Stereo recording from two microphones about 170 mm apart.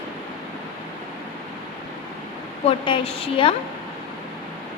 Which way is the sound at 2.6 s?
35° left (ahead or behind).